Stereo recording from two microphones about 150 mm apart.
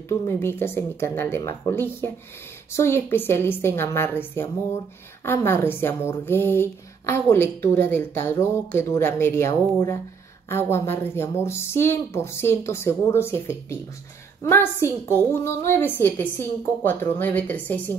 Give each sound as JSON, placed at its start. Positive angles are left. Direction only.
{"t": 0.4, "sound": "speech", "side_deg": 15}